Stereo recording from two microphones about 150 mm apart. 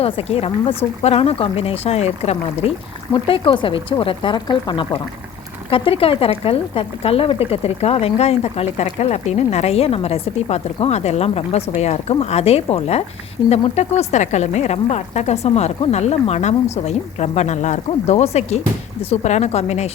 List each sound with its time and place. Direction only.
0.0 s speech: 40° left (ahead or behind)